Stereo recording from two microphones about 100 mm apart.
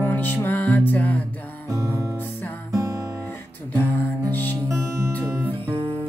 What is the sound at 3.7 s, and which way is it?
Music, 15° left (ahead or behind).